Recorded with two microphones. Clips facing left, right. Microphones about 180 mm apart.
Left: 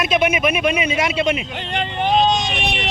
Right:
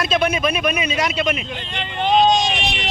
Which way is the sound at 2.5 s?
60° left (ahead or behind).